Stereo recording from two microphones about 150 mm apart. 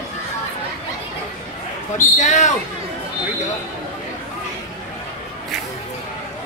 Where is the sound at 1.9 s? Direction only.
55° left (ahead or behind).